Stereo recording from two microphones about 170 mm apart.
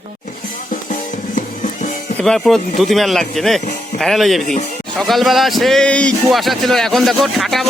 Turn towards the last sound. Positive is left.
turn(degrees=0)  # may be behind; listen again after turning